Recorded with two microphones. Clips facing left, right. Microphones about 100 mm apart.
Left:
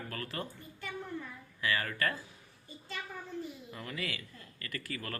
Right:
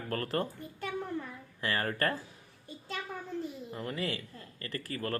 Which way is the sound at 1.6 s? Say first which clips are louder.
Right 2 dB; 40° right (ahead or behind).